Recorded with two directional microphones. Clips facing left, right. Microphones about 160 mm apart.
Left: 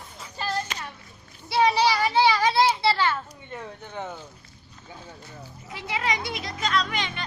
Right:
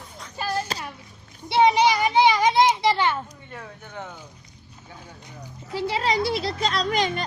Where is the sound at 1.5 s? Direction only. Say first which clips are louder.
Right 3 dB; 20° right (ahead or behind).